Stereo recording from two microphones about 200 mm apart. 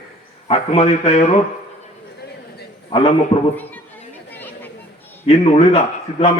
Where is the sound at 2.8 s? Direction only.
30° left (ahead or behind).